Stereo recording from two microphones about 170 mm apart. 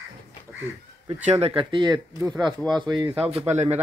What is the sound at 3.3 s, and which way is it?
Speech, 40° right (ahead or behind).